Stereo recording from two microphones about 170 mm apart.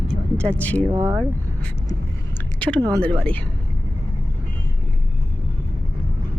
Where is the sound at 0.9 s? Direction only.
15° right (ahead or behind).